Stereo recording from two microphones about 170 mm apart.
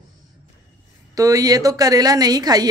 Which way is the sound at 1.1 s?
20° right (ahead or behind).